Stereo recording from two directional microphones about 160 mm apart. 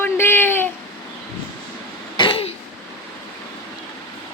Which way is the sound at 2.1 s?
35° left (ahead or behind).